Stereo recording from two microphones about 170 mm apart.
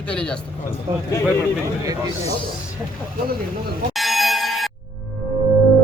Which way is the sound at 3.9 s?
Centre (ahead or behind).